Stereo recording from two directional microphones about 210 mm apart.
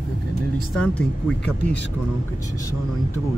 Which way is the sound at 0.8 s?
5° left (ahead or behind).